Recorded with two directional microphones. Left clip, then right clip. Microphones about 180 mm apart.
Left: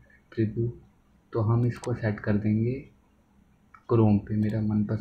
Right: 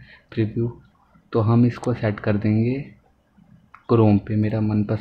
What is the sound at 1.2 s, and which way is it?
Speech, 35° right (ahead or behind).